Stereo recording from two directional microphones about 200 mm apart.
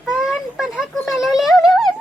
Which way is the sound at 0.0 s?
Centre (ahead or behind).